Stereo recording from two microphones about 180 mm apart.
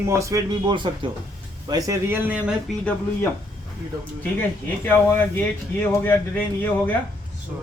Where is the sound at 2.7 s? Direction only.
Centre (ahead or behind).